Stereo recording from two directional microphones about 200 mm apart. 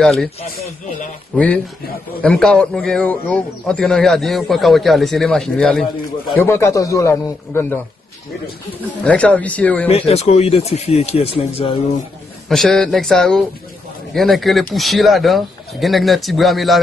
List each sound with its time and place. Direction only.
0.0 s a man's voice: centre (ahead or behind)
1.3 s a man's voice: 5° left (ahead or behind)
9.0 s a man's voice: 5° left (ahead or behind)
9.8 s speech: 30° left (ahead or behind)
12.4 s a man's voice: centre (ahead or behind)